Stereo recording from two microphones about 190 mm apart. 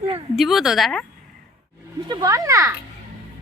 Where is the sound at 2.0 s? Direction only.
20° right (ahead or behind).